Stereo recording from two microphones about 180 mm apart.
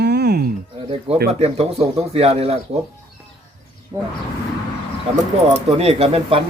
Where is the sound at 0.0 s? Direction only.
65° right (ahead or behind).